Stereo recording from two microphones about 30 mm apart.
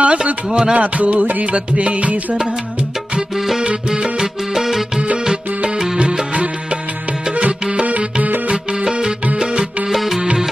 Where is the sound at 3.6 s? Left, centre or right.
Right.